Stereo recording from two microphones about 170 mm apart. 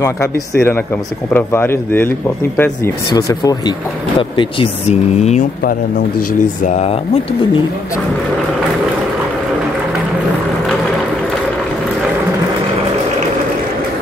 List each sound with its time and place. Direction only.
0.0 s speech: 15° left (ahead or behind); by 5.5 s 40° left (ahead or behind)
5.6 s speech: 60° left (ahead or behind)
6.6 s speech: 40° left (ahead or behind)